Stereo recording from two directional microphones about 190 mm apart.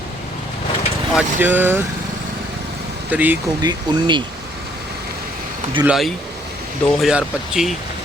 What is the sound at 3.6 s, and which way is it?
Speech, 25° right (ahead or behind).